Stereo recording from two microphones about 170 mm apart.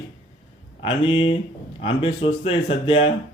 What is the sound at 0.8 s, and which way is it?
Speech, 35° left (ahead or behind).